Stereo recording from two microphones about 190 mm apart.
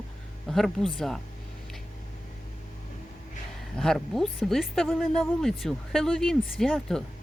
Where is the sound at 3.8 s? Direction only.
Centre (ahead or behind).